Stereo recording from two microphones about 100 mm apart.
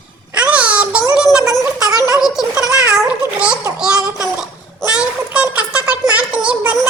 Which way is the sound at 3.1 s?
10° right (ahead or behind).